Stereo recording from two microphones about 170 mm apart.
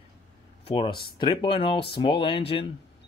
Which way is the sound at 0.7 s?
30° left (ahead or behind).